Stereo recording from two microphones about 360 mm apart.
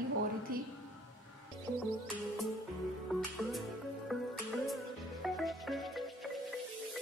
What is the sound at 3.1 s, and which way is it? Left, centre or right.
Music, centre.